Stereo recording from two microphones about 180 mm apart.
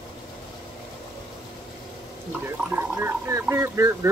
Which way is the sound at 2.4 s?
15° right (ahead or behind).